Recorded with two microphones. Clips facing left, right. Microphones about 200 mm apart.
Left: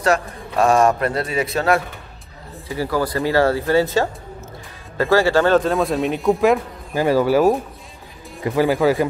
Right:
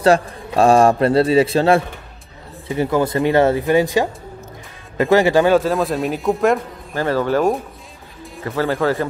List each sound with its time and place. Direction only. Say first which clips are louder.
0.0 s a man's voice: right 5 dB; 30° right (ahead or behind); by 6.6 s centre (ahead or behind)
6.9 s speech: left 2 dB; 10° left (ahead or behind)